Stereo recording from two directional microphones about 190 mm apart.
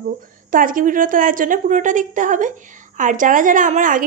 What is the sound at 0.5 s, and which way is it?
A woman's voice, 45° right (ahead or behind).